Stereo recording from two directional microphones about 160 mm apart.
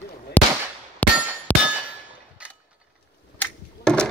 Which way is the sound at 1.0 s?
10° left (ahead or behind).